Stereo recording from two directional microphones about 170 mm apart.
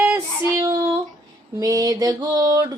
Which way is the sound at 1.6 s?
20° right (ahead or behind).